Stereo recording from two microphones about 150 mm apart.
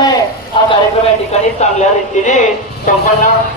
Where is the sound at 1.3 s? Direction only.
50° left (ahead or behind).